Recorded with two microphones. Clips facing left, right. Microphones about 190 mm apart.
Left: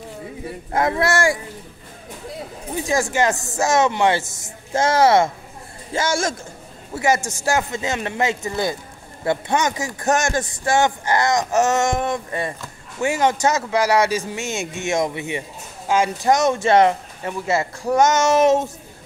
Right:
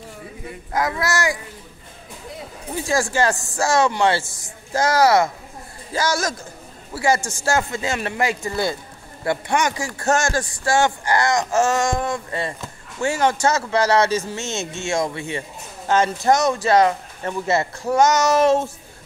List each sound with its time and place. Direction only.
0.7 s a man's voice: 25° left (ahead or behind)
2.7 s a man's voice: 20° left (ahead or behind)
17.2 s a man's voice: 15° left (ahead or behind)